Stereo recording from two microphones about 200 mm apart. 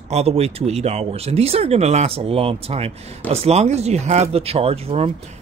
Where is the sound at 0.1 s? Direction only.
30° right (ahead or behind).